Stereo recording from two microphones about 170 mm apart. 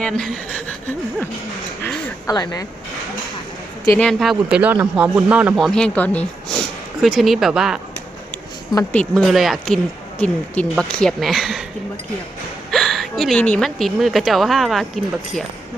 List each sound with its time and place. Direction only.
0.0 s a sound: 5° left (ahead or behind)
2.2 s speech: 20° left (ahead or behind)
3.9 s speech: centre (ahead or behind)
8.9 s speech: 10° left (ahead or behind)
12.7 s a woman's voice: centre (ahead or behind)